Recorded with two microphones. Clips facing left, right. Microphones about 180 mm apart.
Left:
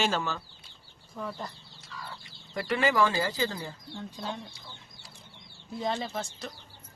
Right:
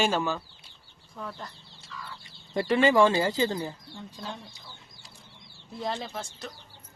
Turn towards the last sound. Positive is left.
turn(degrees=0)  # may be behind; listen again after turning